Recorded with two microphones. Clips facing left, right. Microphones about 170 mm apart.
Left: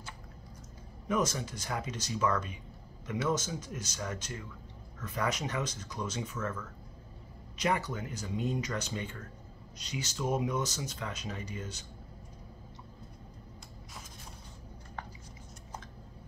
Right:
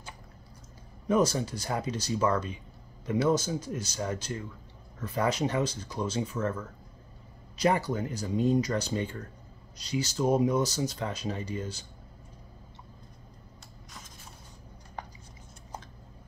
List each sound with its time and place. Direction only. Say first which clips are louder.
1.0 s speech: right 6 dB; 35° right (ahead or behind)